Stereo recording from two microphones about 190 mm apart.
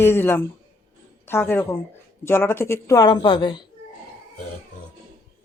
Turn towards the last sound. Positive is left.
turn(degrees=25)  # may be behind; listen again after turning